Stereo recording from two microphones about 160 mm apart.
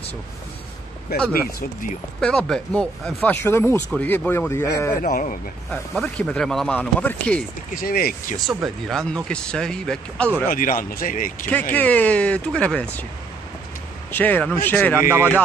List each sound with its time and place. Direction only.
1.1 s speech: 80° left
2.1 s speech: 5° left (ahead or behind)
5.1 s speech: 55° left (ahead or behind)
5.7 s speech: 5° left (ahead or behind)
7.7 s speech: 70° left (ahead or behind)
8.6 s speech: centre (ahead or behind)
10.5 s speech: 60° left (ahead or behind)
11.4 s speech: 10° left (ahead or behind)
14.1 s speech: 10° left (ahead or behind)
15.0 s speech: 15° right (ahead or behind)